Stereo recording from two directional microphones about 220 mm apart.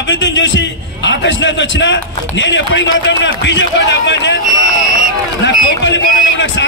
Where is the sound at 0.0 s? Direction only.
60° left (ahead or behind).